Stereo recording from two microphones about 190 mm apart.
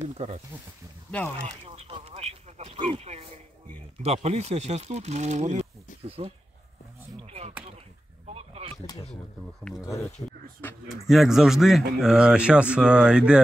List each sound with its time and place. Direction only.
0.2 s speech: 30° right (ahead or behind)
1.4 s a sound: 30° right (ahead or behind)
4.0 s speech: 35° right (ahead or behind)
8.3 s a sound: 30° right (ahead or behind)
10.6 s speech: 10° left (ahead or behind)
11.1 s speech: centre (ahead or behind)